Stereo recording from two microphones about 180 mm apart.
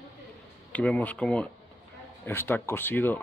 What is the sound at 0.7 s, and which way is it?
Speech, 10° left (ahead or behind).